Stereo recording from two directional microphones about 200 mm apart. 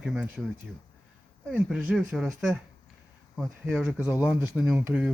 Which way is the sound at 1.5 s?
5° right (ahead or behind).